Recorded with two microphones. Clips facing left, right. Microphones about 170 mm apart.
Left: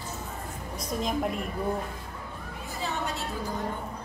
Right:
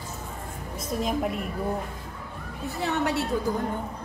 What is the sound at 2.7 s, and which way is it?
Speech, 70° right (ahead or behind).